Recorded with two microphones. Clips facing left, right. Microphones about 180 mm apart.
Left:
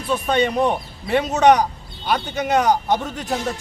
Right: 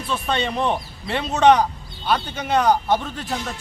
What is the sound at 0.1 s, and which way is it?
A man's voice, 10° left (ahead or behind).